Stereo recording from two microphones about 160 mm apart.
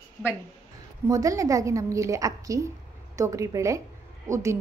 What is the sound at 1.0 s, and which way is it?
A woman's voice, 20° right (ahead or behind).